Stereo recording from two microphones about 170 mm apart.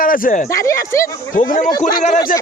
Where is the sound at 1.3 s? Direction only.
50° left (ahead or behind).